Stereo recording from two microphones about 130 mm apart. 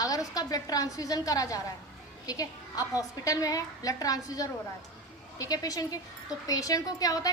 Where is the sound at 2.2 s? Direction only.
25° left (ahead or behind).